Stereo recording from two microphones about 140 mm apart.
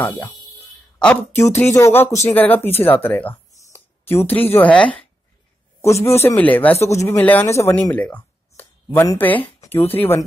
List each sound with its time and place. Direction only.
0.9 s speech: 10° left (ahead or behind)
6.0 s speech: 20° left (ahead or behind)